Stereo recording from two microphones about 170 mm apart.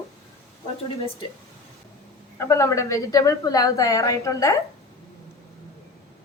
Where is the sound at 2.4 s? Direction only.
15° left (ahead or behind).